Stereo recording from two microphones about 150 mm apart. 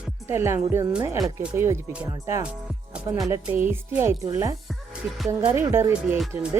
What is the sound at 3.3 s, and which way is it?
Speech, 25° right (ahead or behind).